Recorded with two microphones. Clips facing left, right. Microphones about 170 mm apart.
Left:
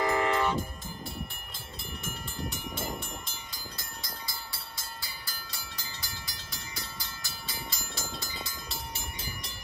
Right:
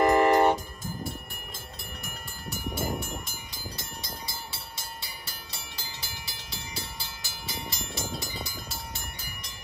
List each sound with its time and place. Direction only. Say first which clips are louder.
0.0 s vehicle: right 7 dB; 65° right (ahead or behind)
2.5 s train: right 5 dB; 5° right (ahead or behind)
4.0 s train: right 3 dB; 25° right (ahead or behind)
7.4 s vehicle: right 5 dB; 20° right (ahead or behind)